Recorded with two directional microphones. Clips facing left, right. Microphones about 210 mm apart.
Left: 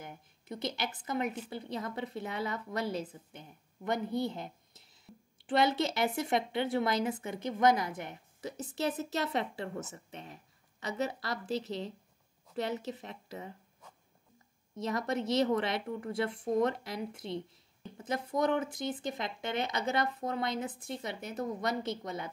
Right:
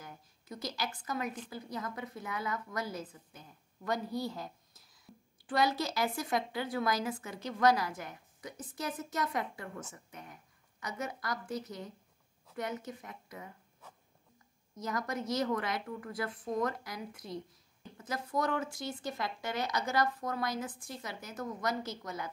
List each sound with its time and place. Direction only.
0.0 s a woman's voice: 25° left (ahead or behind)
14.8 s a woman's voice: 25° left (ahead or behind)